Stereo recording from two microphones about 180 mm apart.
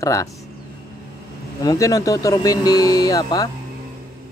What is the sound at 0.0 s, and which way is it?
Speech, 20° left (ahead or behind).